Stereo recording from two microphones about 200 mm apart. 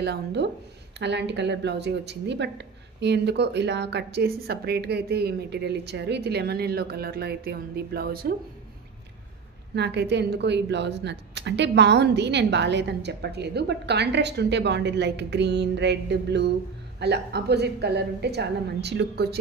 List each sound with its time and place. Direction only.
0.0 s speech: 55° right (ahead or behind)
9.8 s speech: 60° right (ahead or behind)